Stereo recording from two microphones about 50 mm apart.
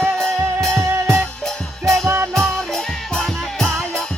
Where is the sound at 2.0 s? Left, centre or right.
Right.